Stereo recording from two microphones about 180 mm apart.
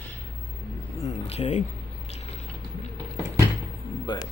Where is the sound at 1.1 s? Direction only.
35° left (ahead or behind).